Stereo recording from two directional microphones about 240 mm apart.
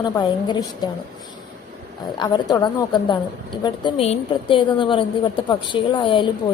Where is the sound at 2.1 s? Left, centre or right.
Centre.